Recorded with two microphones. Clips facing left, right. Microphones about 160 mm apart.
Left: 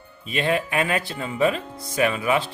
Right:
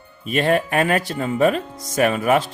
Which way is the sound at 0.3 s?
45° right (ahead or behind).